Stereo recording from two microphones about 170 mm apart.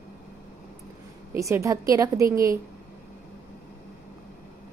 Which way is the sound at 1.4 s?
15° right (ahead or behind).